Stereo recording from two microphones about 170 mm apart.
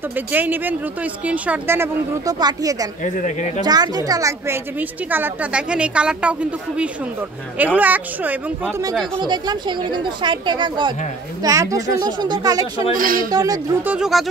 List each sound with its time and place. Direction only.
0.1 s speech: 10° right (ahead or behind)
3.0 s speech: 50° left (ahead or behind)
3.6 s speech: 25° right (ahead or behind); by 6.3 s 5° right (ahead or behind)
7.5 s speech: 10° right (ahead or behind)
9.2 s a woman's voice: 25° right (ahead or behind)
12.9 s speech: 55° right (ahead or behind)
13.3 s a woman's voice: 20° right (ahead or behind)
13.8 s speech: 5° right (ahead or behind)